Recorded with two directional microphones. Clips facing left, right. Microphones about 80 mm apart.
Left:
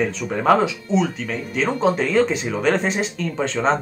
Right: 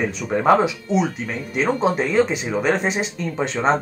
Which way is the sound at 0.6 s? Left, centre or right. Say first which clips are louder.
Even; centre.